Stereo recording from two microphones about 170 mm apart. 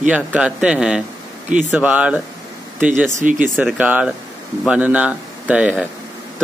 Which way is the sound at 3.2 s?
50° right (ahead or behind).